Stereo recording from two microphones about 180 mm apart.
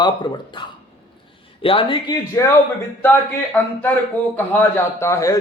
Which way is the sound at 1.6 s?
30° left (ahead or behind).